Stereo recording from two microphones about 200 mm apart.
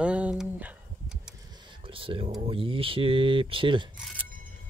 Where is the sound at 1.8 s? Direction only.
25° right (ahead or behind).